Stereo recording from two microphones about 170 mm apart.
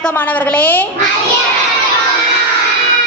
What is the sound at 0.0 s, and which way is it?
Speech, 10° left (ahead or behind).